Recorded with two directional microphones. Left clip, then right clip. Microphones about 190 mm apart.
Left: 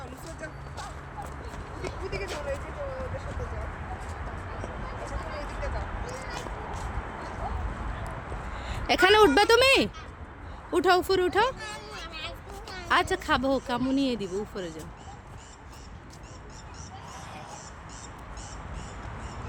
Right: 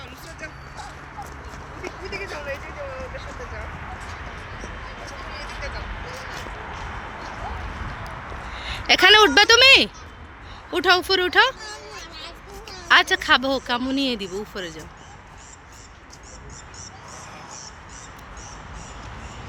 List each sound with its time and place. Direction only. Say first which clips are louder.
2.0 s speech: right 3 dB; 15° right (ahead or behind)
8.6 s speech: right 7 dB; 5° left (ahead or behind)
11.6 s a sound: right 2 dB; 30° left (ahead or behind)
12.9 s speech: right 8 dB; 5° left (ahead or behind)